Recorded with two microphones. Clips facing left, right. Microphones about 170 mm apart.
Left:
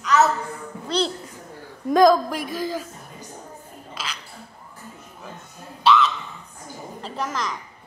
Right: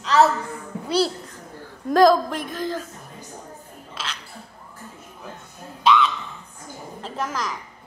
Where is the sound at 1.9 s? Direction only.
Centre (ahead or behind).